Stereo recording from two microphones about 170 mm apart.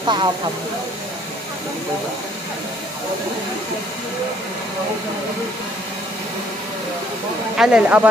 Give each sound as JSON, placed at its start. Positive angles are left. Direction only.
{"t": 0.0, "sound": "speech", "side_deg": -25}
{"t": 7.5, "sound": "speech", "side_deg": -5}